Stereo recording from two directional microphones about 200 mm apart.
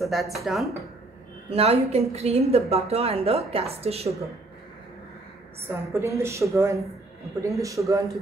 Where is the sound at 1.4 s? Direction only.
30° right (ahead or behind).